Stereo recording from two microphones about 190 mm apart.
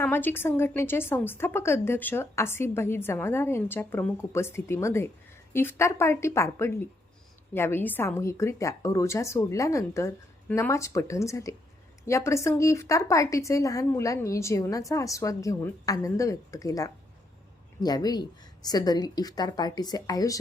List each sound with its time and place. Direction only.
0.0 s a woman's voice: 10° left (ahead or behind)